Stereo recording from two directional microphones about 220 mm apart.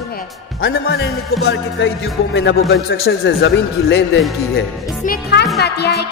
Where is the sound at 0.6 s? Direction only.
45° left (ahead or behind).